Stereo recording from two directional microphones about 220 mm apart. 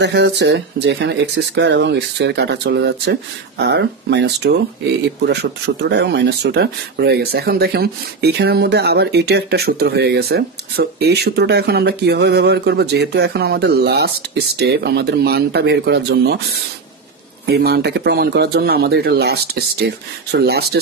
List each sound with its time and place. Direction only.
0.0 s speech: 50° right (ahead or behind)
17.5 s speech: 45° right (ahead or behind)